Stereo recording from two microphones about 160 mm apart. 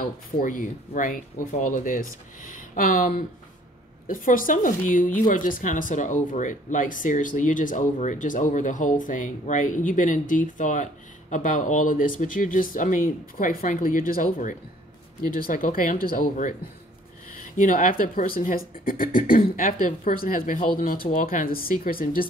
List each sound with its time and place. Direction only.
0.0 s speech: 60° left (ahead or behind)